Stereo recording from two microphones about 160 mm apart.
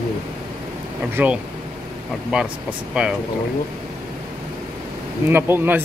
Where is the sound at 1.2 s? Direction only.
10° right (ahead or behind).